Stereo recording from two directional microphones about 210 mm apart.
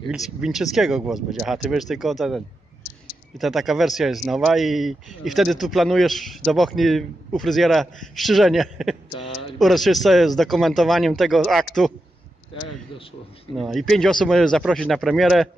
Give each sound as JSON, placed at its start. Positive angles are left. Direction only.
{"t": 0.1, "sound": "speech", "side_deg": 0}
{"t": 13.6, "sound": "speech", "side_deg": 0}